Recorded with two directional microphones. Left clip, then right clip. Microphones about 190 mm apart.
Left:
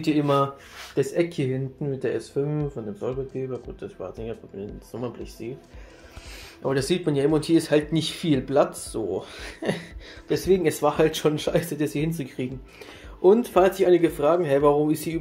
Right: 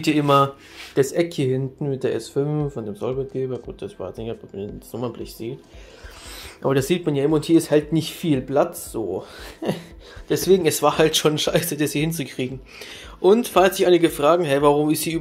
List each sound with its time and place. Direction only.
0.0 s speech: 5° right (ahead or behind)
0.9 s speech: 20° right (ahead or behind)
6.6 s speech: 30° right (ahead or behind)
6.9 s speech: 10° right (ahead or behind)